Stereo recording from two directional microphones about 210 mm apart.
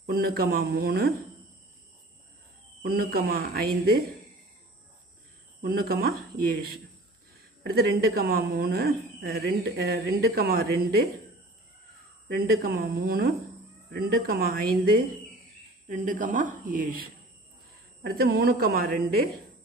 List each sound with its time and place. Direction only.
0.0 s speech: 45° right (ahead or behind)
2.8 s speech: 45° right (ahead or behind)
5.6 s speech: 45° right (ahead or behind)
7.6 s speech: 45° right (ahead or behind)
12.4 s speech: 45° right (ahead or behind)
18.0 s speech: 45° right (ahead or behind)